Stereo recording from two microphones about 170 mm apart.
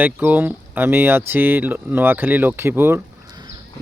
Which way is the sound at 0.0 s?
10° right (ahead or behind).